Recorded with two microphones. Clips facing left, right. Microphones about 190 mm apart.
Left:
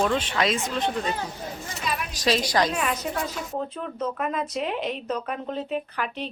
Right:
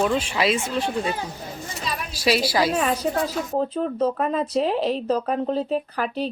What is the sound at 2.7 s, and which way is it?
Speech, 35° right (ahead or behind).